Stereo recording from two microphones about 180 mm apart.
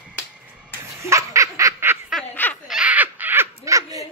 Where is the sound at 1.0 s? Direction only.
15° right (ahead or behind).